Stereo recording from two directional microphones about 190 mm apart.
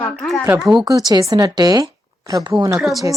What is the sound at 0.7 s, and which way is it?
A child's voice, 20° right (ahead or behind).